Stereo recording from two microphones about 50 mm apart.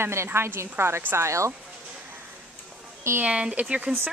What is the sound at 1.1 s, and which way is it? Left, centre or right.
Speech, right.